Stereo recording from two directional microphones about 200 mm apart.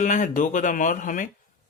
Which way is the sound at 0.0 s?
40° left (ahead or behind).